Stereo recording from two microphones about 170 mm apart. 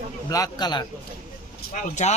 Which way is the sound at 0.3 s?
20° left (ahead or behind).